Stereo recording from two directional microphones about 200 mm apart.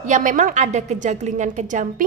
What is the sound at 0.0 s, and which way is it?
A woman's voice, 40° right (ahead or behind).